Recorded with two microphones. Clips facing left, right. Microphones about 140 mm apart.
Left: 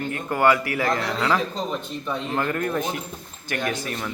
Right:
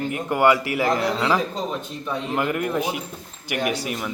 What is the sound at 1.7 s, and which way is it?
Speech, 5° right (ahead or behind).